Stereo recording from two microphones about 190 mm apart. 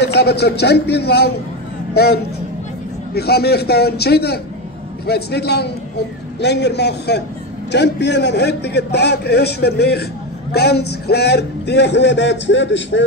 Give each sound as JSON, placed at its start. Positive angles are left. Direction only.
{"t": 0.0, "sound": "a man's voice", "side_deg": 60}